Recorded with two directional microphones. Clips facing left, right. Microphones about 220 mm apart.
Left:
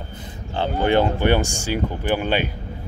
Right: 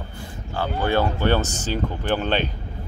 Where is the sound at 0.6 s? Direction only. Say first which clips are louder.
Left 3 dB; 20° left (ahead or behind).